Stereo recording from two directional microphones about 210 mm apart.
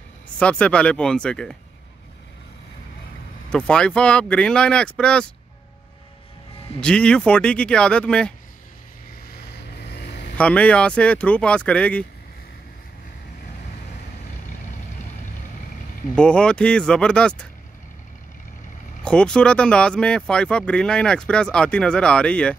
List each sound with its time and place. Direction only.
0.4 s speech: 5° left (ahead or behind)
3.5 s speech: 5° left (ahead or behind)
6.8 s speech: 5° left (ahead or behind)
9.3 s vehicle: 50° left (ahead or behind)
10.3 s speech: 5° left (ahead or behind)
16.2 s speech: 5° left (ahead or behind)
19.0 s speech: 5° left (ahead or behind)